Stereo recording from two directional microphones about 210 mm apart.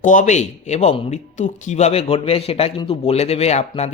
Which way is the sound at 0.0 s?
35° left (ahead or behind).